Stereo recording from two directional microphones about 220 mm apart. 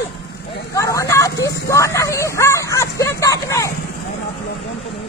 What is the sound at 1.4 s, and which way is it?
Speech, 45° left (ahead or behind).